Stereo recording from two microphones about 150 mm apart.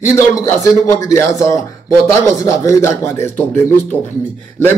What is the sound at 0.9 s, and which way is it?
A man's voice, 20° left (ahead or behind).